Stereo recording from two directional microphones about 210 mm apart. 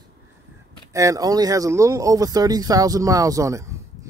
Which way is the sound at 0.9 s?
15° right (ahead or behind).